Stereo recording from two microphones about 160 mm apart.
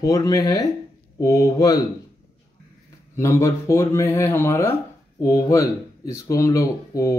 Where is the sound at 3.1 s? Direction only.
15° left (ahead or behind).